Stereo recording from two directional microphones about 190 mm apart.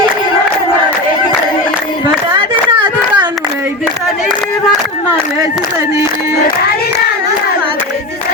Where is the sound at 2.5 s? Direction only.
25° right (ahead or behind).